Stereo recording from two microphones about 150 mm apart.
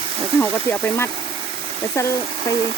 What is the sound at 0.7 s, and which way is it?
Speech, 15° left (ahead or behind).